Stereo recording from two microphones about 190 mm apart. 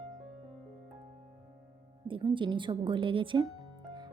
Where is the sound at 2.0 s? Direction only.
25° right (ahead or behind).